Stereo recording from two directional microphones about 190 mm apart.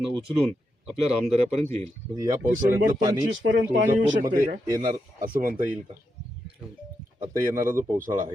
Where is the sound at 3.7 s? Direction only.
45° right (ahead or behind).